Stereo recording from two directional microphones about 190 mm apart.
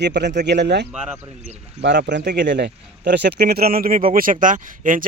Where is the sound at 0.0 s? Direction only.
65° right (ahead or behind).